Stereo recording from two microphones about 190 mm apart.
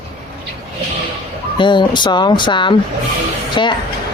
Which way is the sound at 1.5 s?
25° left (ahead or behind).